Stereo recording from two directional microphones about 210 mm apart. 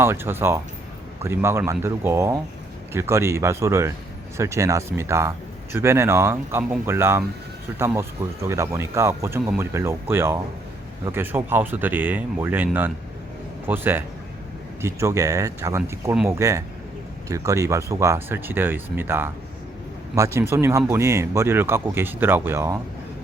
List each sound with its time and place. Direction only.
0.0 s speech: 10° right (ahead or behind)